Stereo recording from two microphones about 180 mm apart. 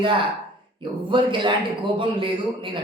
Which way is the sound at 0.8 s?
25° right (ahead or behind).